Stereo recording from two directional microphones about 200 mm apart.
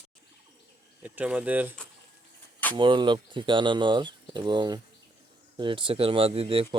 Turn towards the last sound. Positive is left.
turn(degrees=-25)  # may be behind; listen again after turning